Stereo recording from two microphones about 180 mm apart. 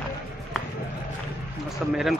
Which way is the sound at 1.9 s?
Centre (ahead or behind).